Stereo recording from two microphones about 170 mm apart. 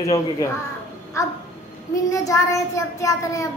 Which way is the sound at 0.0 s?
20° left (ahead or behind).